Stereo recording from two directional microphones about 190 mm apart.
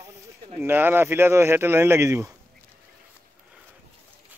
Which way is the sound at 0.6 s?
10° right (ahead or behind).